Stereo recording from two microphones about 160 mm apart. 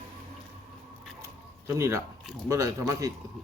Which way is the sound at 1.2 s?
15° right (ahead or behind).